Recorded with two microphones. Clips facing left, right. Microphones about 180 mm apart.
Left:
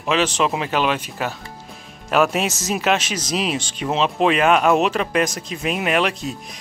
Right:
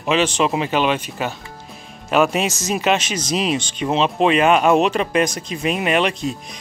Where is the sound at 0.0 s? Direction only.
Centre (ahead or behind).